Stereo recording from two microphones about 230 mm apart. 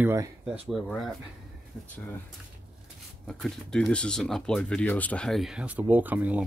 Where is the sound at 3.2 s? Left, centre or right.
Centre.